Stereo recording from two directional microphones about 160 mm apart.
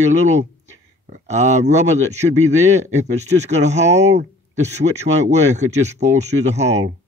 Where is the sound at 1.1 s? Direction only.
45° right (ahead or behind).